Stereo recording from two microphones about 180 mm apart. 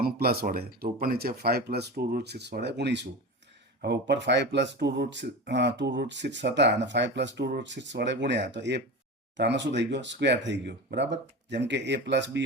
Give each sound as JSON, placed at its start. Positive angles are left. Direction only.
{"t": 0.0, "sound": "speech", "side_deg": -60}